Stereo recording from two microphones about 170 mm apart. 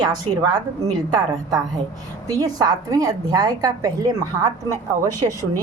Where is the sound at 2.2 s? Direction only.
20° right (ahead or behind).